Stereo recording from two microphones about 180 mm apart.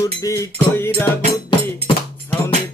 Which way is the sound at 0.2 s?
15° left (ahead or behind).